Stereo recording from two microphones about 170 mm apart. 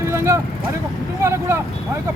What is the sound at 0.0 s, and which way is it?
Vehicle, 15° right (ahead or behind).